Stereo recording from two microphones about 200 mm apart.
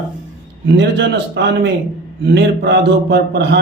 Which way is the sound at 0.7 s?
60° right (ahead or behind).